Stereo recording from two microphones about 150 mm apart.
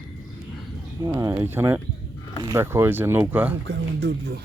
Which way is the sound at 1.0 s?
25° right (ahead or behind).